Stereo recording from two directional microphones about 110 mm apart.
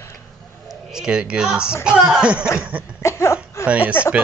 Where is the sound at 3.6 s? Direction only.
10° right (ahead or behind).